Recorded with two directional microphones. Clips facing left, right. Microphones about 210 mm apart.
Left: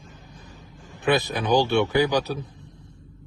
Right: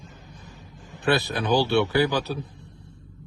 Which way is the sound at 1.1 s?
20° left (ahead or behind).